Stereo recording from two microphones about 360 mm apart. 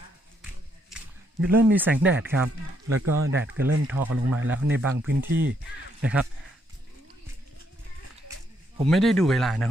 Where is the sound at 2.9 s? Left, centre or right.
Right.